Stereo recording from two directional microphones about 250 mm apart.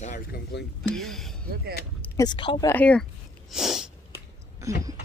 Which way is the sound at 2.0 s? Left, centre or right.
Centre.